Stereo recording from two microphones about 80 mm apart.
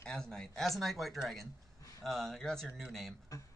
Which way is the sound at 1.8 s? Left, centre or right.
Left.